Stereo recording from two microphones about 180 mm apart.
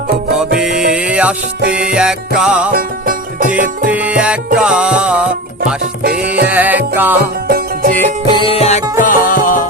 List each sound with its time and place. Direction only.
0.5 s music: 5° right (ahead or behind)
2.7 s music: 50° right (ahead or behind)
3.8 s music: 10° right (ahead or behind)
6.4 s music: 10° right (ahead or behind)
7.4 s music: 50° right (ahead or behind)
8.4 s music: 30° left (ahead or behind); by 9.6 s 50° left (ahead or behind)